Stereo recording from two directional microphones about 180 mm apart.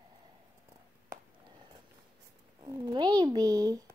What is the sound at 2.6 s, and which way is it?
Speech, 25° right (ahead or behind).